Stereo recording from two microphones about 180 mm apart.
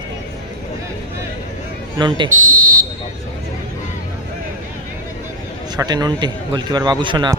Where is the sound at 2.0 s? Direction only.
25° right (ahead or behind).